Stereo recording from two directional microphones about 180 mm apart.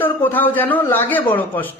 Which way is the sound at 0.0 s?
10° left (ahead or behind).